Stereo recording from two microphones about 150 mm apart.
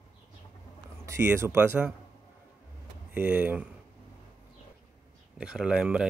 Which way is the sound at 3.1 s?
15° right (ahead or behind).